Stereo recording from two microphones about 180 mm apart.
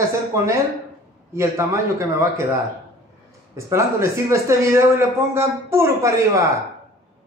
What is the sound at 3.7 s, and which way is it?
A man's voice, 15° right (ahead or behind).